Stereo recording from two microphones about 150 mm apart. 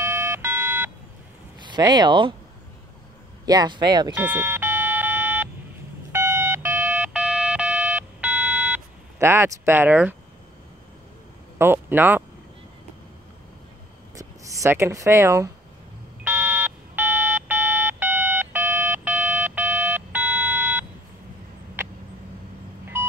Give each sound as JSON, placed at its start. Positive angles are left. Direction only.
{"t": 0.0, "sound": "alarm clock", "side_deg": -15}
{"t": 1.7, "sound": "speech", "side_deg": -25}
{"t": 3.4, "sound": "speech", "side_deg": -30}
{"t": 4.1, "sound": "a sound", "side_deg": -10}
{"t": 8.7, "sound": "speech", "side_deg": -15}
{"t": 11.5, "sound": "speech", "side_deg": -15}
{"t": 14.1, "sound": "speech", "side_deg": -20}
{"t": 16.3, "sound": "alarm clock", "side_deg": -10}